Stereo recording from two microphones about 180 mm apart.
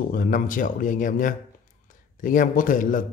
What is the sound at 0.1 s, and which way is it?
A man's voice, 45° left (ahead or behind).